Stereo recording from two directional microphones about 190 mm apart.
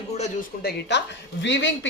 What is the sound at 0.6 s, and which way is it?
A woman's voice, 65° left (ahead or behind).